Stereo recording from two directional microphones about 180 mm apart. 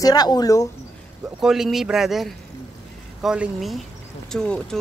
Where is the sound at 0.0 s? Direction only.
20° left (ahead or behind).